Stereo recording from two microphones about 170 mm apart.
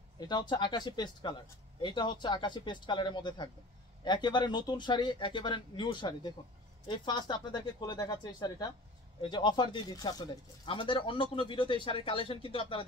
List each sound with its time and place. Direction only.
0.3 s speech: 25° left (ahead or behind)